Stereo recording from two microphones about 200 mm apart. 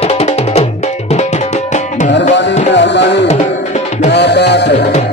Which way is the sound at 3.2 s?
35° left (ahead or behind).